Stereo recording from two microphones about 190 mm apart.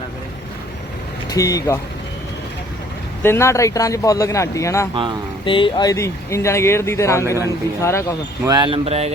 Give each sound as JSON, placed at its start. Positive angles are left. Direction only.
{"t": 1.3, "sound": "speech", "side_deg": 15}
{"t": 3.2, "sound": "speech", "side_deg": 15}
{"t": 5.5, "sound": "speech", "side_deg": 25}
{"t": 8.4, "sound": "speech", "side_deg": -25}